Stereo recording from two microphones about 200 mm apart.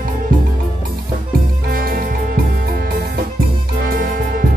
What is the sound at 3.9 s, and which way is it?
Music, 45° right (ahead or behind).